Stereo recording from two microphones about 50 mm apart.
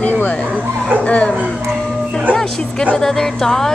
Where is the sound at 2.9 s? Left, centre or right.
Centre.